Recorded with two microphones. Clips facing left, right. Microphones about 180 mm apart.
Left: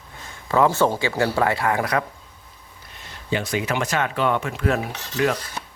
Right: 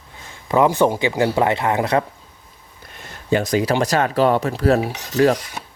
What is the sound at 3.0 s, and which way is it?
Speech, 45° right (ahead or behind).